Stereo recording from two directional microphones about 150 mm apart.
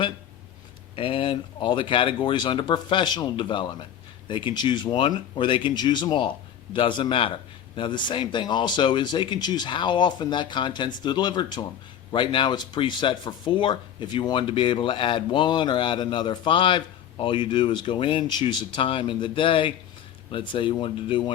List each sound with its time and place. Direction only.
0.9 s speech: 35° left (ahead or behind)